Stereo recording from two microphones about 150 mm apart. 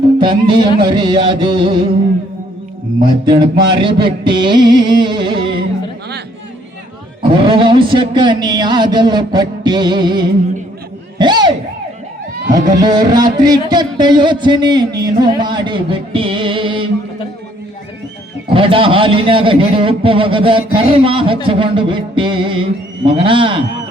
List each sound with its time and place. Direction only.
0.2 s speech: 30° right (ahead or behind)
3.2 s speech: 35° right (ahead or behind)
7.2 s speech: 35° right (ahead or behind)
12.7 s music: 25° right (ahead or behind)
18.5 s speech: 35° right (ahead or behind)